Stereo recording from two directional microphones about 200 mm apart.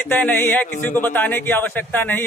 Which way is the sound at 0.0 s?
10° left (ahead or behind).